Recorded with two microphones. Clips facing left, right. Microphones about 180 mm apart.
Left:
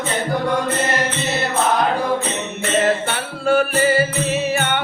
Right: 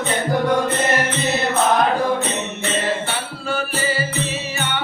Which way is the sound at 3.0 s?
55° left (ahead or behind).